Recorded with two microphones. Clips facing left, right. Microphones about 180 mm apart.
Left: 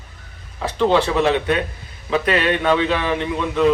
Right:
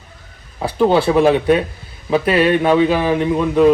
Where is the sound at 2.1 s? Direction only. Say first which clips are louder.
Right 5 dB; 10° right (ahead or behind).